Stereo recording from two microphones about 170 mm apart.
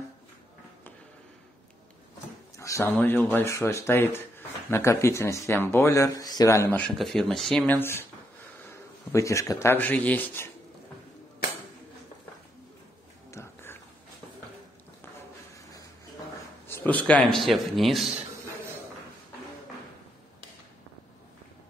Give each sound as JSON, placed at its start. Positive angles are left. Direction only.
{"t": 2.5, "sound": "speech", "side_deg": 20}
{"t": 7.0, "sound": "a man's voice", "side_deg": 0}
{"t": 9.1, "sound": "speech", "side_deg": 20}
{"t": 13.3, "sound": "a sound", "side_deg": 15}
{"t": 16.6, "sound": "a man's voice", "side_deg": 10}